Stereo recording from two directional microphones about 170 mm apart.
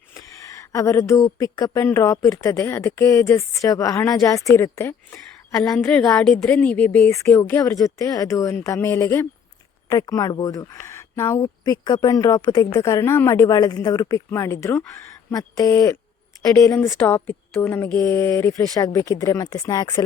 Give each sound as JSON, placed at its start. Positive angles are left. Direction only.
{"t": 0.1, "sound": "a woman's voice", "side_deg": 15}